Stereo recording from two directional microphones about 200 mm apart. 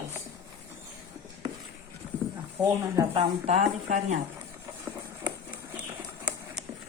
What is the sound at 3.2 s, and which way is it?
Speech, 35° right (ahead or behind).